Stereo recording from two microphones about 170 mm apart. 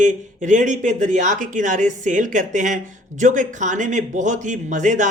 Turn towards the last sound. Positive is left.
turn(degrees=-45)  # may be behind; listen again after turning